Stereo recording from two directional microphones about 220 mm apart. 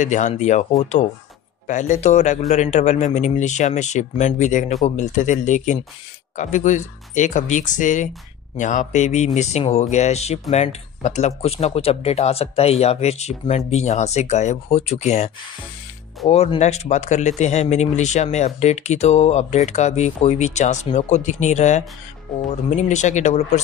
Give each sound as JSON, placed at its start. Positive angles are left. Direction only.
{"t": 0.0, "sound": "speech", "side_deg": 35}
{"t": 1.7, "sound": "speech", "side_deg": 35}